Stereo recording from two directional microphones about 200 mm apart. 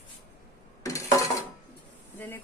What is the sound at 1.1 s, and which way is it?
Dishes, 15° left (ahead or behind).